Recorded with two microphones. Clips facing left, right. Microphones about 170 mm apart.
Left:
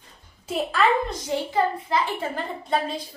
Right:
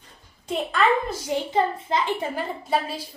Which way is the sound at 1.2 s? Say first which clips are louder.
Right 1 dB; 20° right (ahead or behind).